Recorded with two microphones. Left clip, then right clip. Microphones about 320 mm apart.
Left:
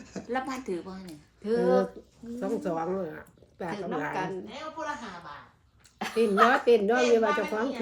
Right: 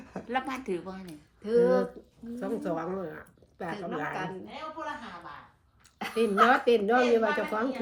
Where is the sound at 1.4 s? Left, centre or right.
Left.